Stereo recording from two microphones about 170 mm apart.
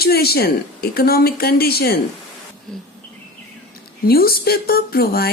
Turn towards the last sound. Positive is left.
turn(degrees=60)  # may be behind; listen again after turning